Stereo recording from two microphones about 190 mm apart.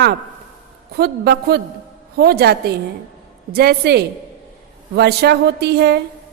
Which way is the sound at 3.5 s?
60° right (ahead or behind).